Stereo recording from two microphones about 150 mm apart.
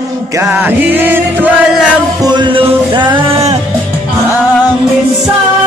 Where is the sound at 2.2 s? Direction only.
30° right (ahead or behind).